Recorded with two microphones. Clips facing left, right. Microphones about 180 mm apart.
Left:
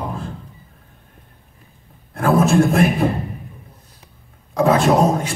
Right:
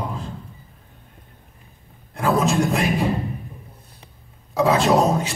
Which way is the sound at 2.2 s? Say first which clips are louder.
Left 5 dB; 55° left (ahead or behind).